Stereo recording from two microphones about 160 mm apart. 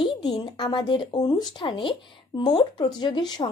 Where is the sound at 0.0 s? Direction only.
30° left (ahead or behind).